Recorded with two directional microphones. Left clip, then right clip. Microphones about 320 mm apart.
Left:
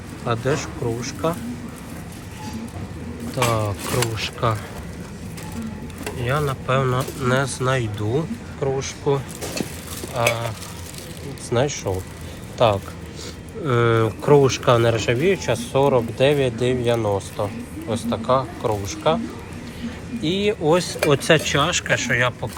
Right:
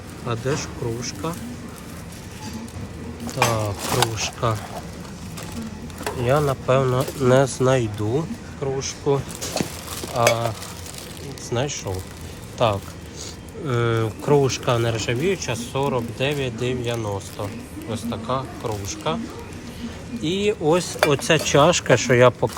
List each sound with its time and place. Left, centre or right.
0.3 s speech: centre
3.3 s speech: centre
6.2 s speech: centre
11.4 s speech: centre